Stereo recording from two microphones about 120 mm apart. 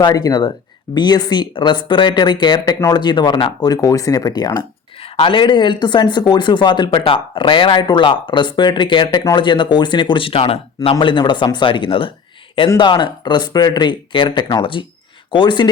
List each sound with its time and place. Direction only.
0.0 s speech: 35° left (ahead or behind)
4.9 s speech: 50° left (ahead or behind)
11.0 s speech: 40° left (ahead or behind)